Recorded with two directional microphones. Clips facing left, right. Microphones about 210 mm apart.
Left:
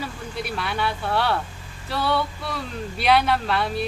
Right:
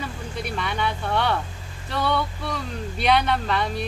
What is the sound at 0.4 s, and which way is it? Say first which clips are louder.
Speech: even; 5° left (ahead or behind).